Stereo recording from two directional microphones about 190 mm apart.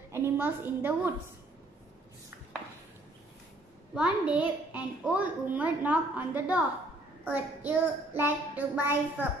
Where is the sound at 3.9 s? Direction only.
5° right (ahead or behind).